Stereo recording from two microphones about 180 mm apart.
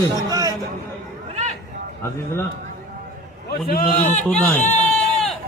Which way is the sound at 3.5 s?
60° left (ahead or behind).